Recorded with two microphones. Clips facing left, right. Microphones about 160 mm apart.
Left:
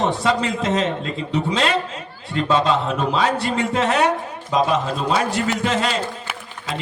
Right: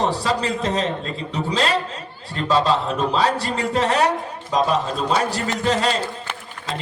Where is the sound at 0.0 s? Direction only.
35° right (ahead or behind).